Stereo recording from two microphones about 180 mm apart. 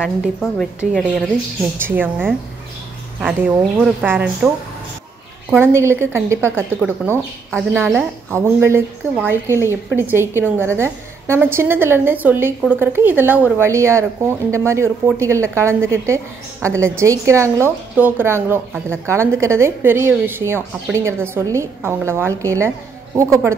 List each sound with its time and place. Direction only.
0.0 s a woman's voice: centre (ahead or behind)
5.5 s a woman's voice: 15° right (ahead or behind)